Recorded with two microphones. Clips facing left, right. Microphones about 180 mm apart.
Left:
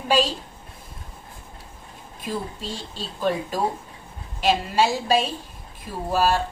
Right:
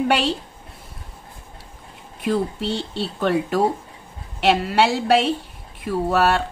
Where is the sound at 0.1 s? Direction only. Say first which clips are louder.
Right 1 dB; 65° right (ahead or behind).